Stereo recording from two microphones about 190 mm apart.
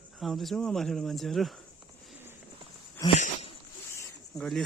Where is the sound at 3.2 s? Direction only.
35° left (ahead or behind).